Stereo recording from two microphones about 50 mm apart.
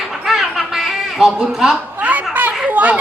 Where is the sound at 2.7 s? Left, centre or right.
Right.